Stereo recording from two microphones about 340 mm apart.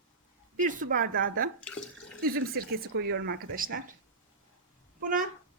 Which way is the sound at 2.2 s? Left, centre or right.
Right.